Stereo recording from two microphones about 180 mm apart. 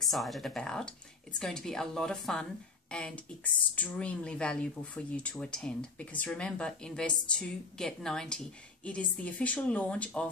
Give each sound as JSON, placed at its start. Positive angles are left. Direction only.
{"t": 0.0, "sound": "speech", "side_deg": 0}